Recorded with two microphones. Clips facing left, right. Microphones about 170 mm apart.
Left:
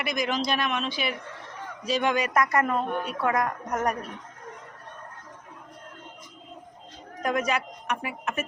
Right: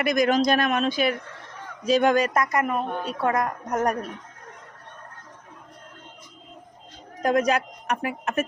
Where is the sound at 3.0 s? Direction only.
30° right (ahead or behind).